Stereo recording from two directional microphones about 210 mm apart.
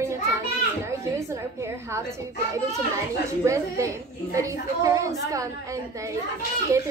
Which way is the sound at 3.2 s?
15° right (ahead or behind).